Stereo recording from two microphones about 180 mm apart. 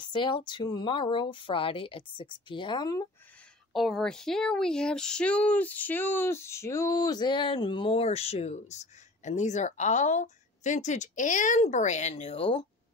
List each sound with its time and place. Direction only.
0.0 s speech: 25° left (ahead or behind)
3.7 s speech: centre (ahead or behind); by 12.6 s 30° left (ahead or behind)